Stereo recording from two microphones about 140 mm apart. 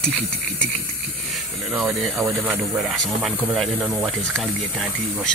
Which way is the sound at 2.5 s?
20° right (ahead or behind).